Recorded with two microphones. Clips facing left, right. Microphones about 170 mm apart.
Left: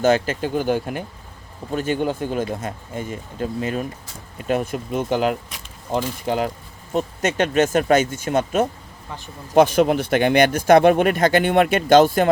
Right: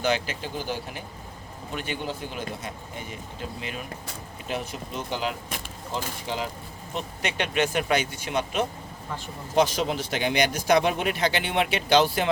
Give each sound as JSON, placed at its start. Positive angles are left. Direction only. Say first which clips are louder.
{"t": 0.0, "sound": "speech", "louder": "left 8 dB", "side_deg": 45}